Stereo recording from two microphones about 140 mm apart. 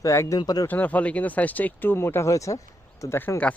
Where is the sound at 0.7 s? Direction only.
10° left (ahead or behind).